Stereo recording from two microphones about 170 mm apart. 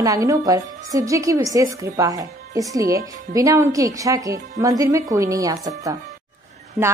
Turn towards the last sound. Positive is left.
turn(degrees=-10)  # may be behind; listen again after turning